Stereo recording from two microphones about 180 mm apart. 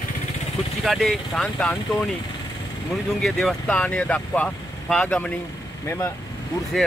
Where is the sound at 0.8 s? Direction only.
Centre (ahead or behind).